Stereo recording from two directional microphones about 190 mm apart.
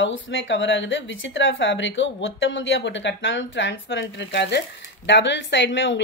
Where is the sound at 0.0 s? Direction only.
80° left.